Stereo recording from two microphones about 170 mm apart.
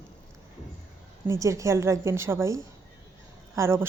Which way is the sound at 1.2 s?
15° right (ahead or behind).